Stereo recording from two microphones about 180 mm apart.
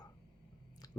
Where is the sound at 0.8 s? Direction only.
20° left (ahead or behind).